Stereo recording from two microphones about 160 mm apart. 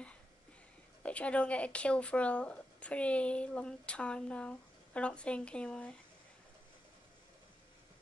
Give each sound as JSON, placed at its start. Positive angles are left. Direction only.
{"t": 1.0, "sound": "speech", "side_deg": 10}